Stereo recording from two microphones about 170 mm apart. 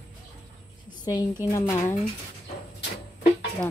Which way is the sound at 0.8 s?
25° left (ahead or behind).